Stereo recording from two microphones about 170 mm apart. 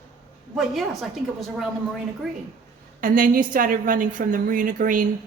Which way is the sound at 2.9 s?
55° right (ahead or behind).